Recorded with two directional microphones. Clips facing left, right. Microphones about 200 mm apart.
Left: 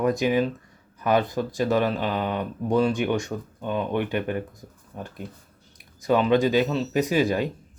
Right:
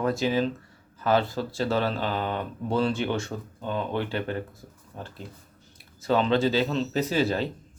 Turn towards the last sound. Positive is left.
turn(degrees=15)  # may be behind; listen again after turning